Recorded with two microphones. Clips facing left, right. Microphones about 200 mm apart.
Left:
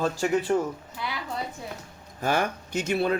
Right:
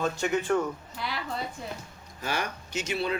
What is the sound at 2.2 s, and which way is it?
Speech, 50° left (ahead or behind).